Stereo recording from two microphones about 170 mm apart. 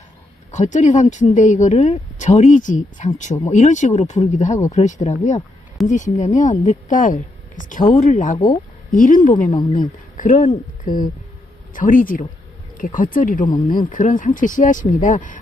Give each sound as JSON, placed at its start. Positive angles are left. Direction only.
{"t": 0.5, "sound": "speech", "side_deg": 45}
{"t": 9.5, "sound": "speech", "side_deg": 25}
{"t": 10.1, "sound": "speech", "side_deg": 50}
{"t": 11.7, "sound": "speech", "side_deg": 50}